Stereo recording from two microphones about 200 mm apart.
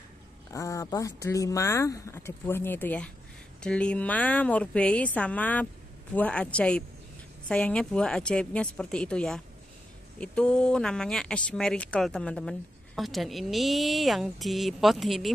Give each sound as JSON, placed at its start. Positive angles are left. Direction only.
{"t": 0.5, "sound": "speech", "side_deg": 15}